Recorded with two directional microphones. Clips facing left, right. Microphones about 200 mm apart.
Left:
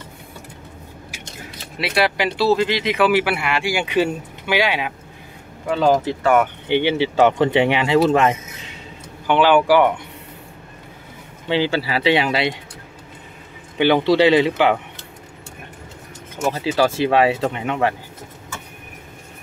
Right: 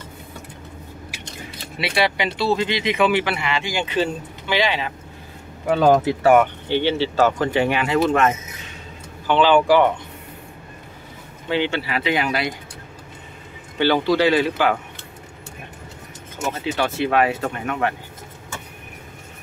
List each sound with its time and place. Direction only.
1.8 s speech: centre (ahead or behind)
6.0 s speech: 10° right (ahead or behind)
6.7 s speech: 15° left (ahead or behind)
9.3 s speech: 10° left (ahead or behind)
11.4 s speech: 30° left (ahead or behind)
13.7 s speech: 20° left (ahead or behind)
16.5 s speech: 35° left (ahead or behind)